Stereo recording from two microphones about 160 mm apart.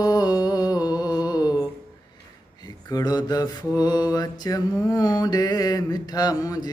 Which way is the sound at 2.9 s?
25° left (ahead or behind).